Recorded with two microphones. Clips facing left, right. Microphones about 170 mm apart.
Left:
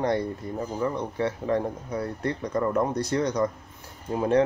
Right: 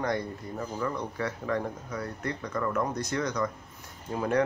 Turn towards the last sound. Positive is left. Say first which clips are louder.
# left 5 dB
turn(degrees=25)  # may be behind; listen again after turning